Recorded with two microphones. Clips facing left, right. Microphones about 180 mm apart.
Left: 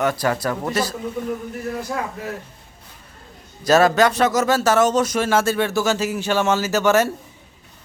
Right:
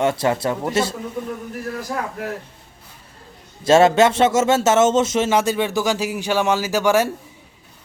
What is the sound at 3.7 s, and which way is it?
A man's voice, 25° right (ahead or behind).